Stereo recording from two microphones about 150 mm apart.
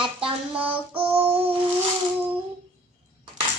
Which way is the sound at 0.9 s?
40° right (ahead or behind).